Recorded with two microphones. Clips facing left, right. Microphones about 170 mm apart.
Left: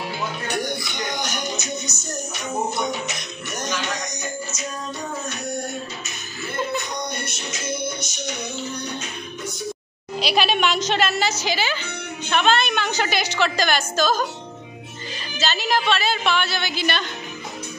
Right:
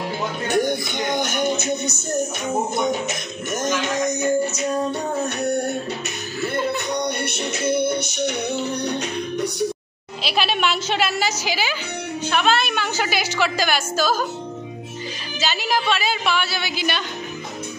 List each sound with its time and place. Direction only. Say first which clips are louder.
0.8 s music: right 5 dB; 50° right (ahead or behind); by 9.7 s 65° right (ahead or behind)
10.2 s a woman's voice: left 1 dB; centre (ahead or behind)
15.4 s a woman's voice: even; 10° right (ahead or behind)